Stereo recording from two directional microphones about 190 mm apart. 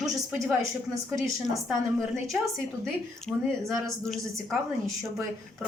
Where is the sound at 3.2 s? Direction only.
Centre (ahead or behind).